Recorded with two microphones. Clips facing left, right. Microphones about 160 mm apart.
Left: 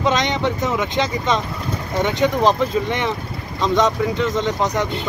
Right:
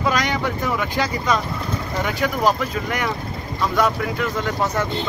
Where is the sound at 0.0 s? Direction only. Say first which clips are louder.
Left 2 dB; 20° left (ahead or behind).